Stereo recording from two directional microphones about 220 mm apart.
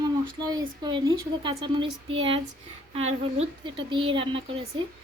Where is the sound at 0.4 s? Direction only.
20° right (ahead or behind).